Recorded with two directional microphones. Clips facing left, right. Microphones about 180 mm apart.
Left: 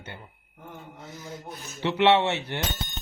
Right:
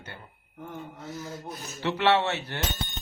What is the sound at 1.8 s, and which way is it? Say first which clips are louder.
Speech: left 3 dB; 20° left (ahead or behind).